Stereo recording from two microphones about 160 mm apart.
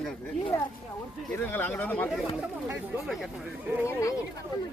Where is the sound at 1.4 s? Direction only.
10° left (ahead or behind).